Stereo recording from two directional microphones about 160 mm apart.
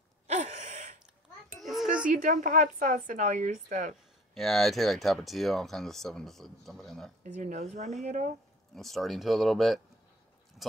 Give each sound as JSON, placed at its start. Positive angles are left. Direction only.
{"t": 0.3, "sound": "gasp", "side_deg": -45}
{"t": 1.6, "sound": "music", "side_deg": 0}
{"t": 2.0, "sound": "a woman's voice", "side_deg": -55}
{"t": 4.3, "sound": "speech", "side_deg": 0}
{"t": 7.3, "sound": "a woman's voice", "side_deg": -45}
{"t": 8.7, "sound": "speech", "side_deg": 0}